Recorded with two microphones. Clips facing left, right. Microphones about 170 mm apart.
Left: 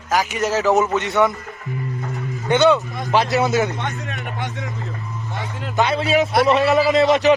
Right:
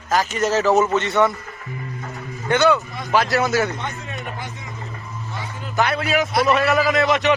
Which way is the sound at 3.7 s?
65° left (ahead or behind).